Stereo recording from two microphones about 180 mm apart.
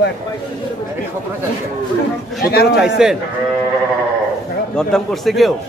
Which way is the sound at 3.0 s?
Centre (ahead or behind).